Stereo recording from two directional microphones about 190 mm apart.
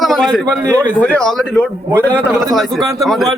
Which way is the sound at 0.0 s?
Centre (ahead or behind).